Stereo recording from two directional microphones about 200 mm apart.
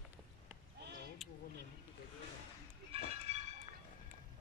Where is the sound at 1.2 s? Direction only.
Centre (ahead or behind).